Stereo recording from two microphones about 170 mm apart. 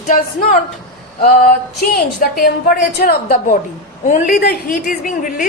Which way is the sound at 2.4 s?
65° left (ahead or behind).